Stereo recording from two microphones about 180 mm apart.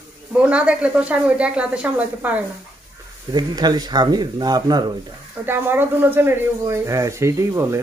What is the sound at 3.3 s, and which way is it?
Speech, 25° right (ahead or behind).